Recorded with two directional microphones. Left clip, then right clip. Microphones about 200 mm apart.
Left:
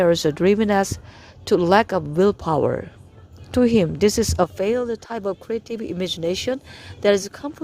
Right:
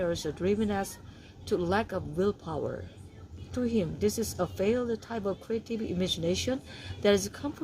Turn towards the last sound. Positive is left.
turn(degrees=45)  # may be behind; listen again after turning